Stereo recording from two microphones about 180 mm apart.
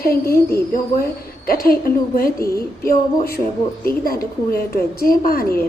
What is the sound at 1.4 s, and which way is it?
A woman's voice, 55° left (ahead or behind).